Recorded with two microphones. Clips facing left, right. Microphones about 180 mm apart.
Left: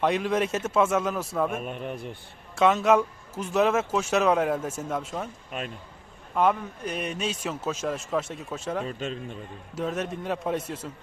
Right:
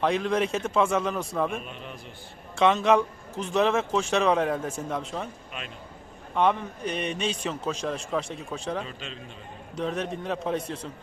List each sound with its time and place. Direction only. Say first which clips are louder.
0.0 s a man's voice: even; 5° left (ahead or behind)
1.6 s a man's voice: left 7 dB; 50° left (ahead or behind)
2.6 s a man's voice: even; 5° left (ahead or behind)
5.5 s a man's voice: left 7 dB; 45° left (ahead or behind)
6.3 s a man's voice: even; 5° left (ahead or behind)
8.9 s a man's voice: left 8 dB; 45° left (ahead or behind)
9.7 s a man's voice: even; 5° left (ahead or behind)